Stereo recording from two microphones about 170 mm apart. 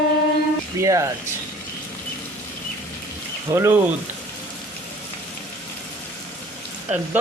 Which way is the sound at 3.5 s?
15° right (ahead or behind).